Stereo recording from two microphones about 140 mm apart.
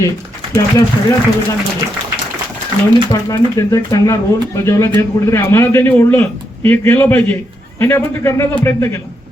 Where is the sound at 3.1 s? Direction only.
25° left (ahead or behind).